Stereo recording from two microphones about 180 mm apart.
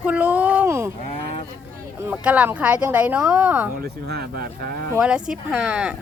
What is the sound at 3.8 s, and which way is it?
Speech, 60° right (ahead or behind).